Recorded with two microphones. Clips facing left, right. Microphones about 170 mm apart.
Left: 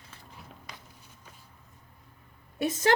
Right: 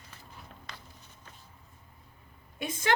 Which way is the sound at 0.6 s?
10° left (ahead or behind).